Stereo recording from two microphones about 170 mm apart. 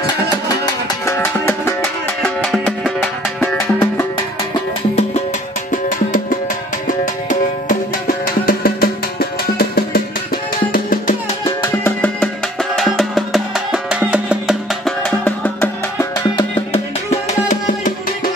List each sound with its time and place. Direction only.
0.7 s music: 15° left (ahead or behind); by 3.6 s centre (ahead or behind)
3.8 s music: 15° left (ahead or behind)
8.5 s music: 60° left (ahead or behind)
11.6 s music: 15° left (ahead or behind)
12.7 s music: centre (ahead or behind); by 16.4 s 15° left (ahead or behind)
16.7 s music: 45° left (ahead or behind)